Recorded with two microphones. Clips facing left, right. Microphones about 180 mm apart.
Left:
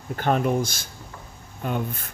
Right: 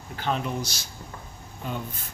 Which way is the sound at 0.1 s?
50° left (ahead or behind).